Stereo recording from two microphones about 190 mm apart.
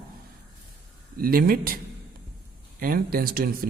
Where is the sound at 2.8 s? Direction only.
50° right (ahead or behind).